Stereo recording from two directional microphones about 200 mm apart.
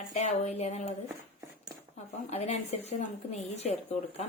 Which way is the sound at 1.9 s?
35° left (ahead or behind).